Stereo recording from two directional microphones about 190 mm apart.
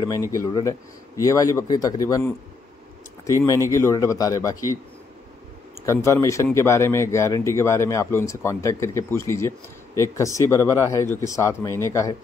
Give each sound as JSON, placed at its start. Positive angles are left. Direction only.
{"t": 0.3, "sound": "speech", "side_deg": 20}
{"t": 3.4, "sound": "speech", "side_deg": 15}
{"t": 5.9, "sound": "speech", "side_deg": 15}